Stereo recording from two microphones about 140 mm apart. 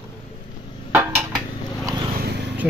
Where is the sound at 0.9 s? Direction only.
5° right (ahead or behind).